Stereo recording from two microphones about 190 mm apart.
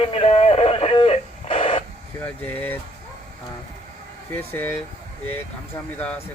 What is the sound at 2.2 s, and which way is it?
Speech, 10° left (ahead or behind).